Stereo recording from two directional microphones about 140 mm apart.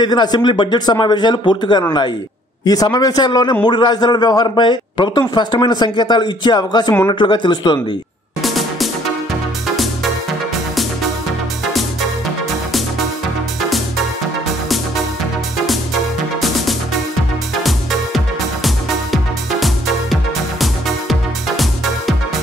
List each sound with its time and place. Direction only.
0.0 s a man's voice: 30° left (ahead or behind)
8.4 s music: centre (ahead or behind)
17.6 s music: centre (ahead or behind)
20.6 s music: centre (ahead or behind)